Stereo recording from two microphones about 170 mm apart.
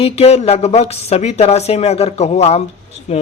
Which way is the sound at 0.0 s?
40° left (ahead or behind).